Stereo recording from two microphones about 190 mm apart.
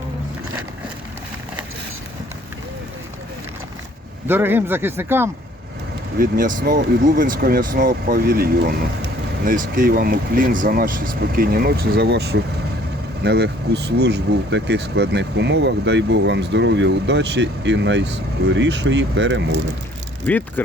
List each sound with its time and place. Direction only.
4.3 s speech: 10° right (ahead or behind)
6.1 s speech: 45° right (ahead or behind); by 19.5 s 70° right (ahead or behind)